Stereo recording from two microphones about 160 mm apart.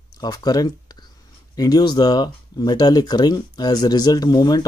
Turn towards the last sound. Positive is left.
turn(degrees=25)  # may be behind; listen again after turning